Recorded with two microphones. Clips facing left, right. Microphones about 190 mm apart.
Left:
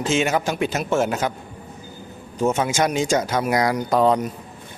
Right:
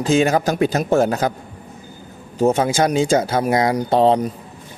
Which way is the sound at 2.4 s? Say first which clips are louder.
Right 4 dB; 35° right (ahead or behind).